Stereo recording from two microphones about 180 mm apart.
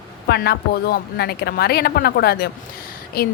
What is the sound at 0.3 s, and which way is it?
A woman's voice, 65° left (ahead or behind).